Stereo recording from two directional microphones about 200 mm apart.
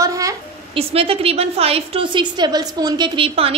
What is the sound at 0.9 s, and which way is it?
A woman's voice, 30° right (ahead or behind).